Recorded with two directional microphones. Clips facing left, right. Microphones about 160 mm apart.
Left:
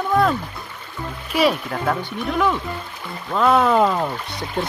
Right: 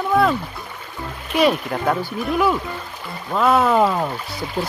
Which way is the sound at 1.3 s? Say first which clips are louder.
Right 2 dB; centre (ahead or behind).